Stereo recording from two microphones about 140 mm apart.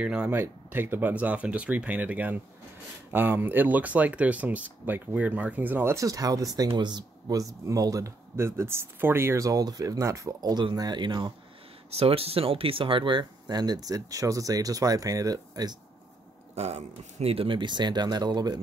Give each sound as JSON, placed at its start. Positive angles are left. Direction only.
{"t": 0.0, "sound": "speech", "side_deg": -10}
{"t": 11.9, "sound": "speech", "side_deg": -45}
{"t": 16.5, "sound": "speech", "side_deg": -50}